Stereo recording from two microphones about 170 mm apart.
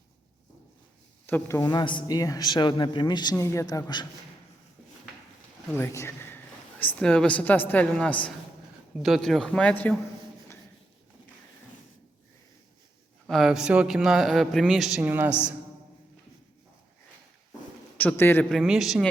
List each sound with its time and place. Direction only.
1.3 s a man's voice: 15° left (ahead or behind)
5.7 s a man's voice: 15° left (ahead or behind)
13.2 s a man's voice: centre (ahead or behind)
17.9 s a man's voice: 10° left (ahead or behind)